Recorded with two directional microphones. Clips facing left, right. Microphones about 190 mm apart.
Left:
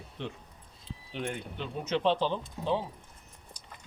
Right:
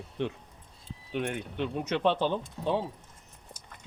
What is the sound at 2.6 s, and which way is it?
Speech, 5° left (ahead or behind).